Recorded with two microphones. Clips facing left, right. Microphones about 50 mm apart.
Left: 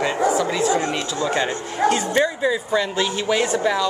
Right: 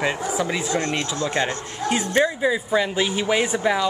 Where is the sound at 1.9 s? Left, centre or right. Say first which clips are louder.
Right 1 dB; centre.